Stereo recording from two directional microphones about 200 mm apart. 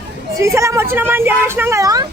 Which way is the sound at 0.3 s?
15° right (ahead or behind).